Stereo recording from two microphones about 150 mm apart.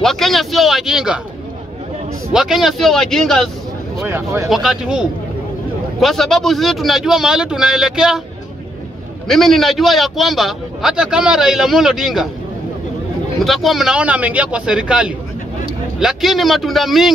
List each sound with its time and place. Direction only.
0.0 s a man's voice: centre (ahead or behind)
2.3 s a man's voice: 5° right (ahead or behind)
4.0 s a man's voice: 20° right (ahead or behind)
4.5 s a man's voice: 5° right (ahead or behind)
9.3 s a man's voice: centre (ahead or behind)
13.4 s a man's voice: centre (ahead or behind)